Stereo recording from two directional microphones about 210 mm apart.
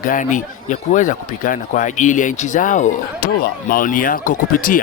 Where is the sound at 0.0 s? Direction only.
40° left (ahead or behind).